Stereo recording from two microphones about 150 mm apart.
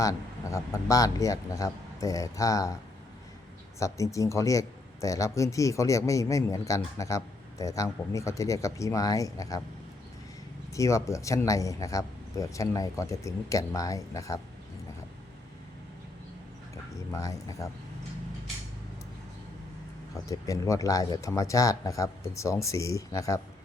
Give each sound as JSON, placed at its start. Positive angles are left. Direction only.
{"t": 0.0, "sound": "speech", "side_deg": 20}
{"t": 3.8, "sound": "speech", "side_deg": 20}
{"t": 10.8, "sound": "speech", "side_deg": 20}
{"t": 17.1, "sound": "speech", "side_deg": 20}
{"t": 20.1, "sound": "speech", "side_deg": 20}